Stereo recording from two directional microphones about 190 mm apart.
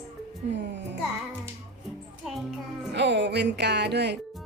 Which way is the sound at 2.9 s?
65° right (ahead or behind).